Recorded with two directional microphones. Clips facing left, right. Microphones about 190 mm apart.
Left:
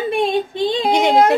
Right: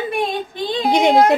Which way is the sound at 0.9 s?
20° right (ahead or behind).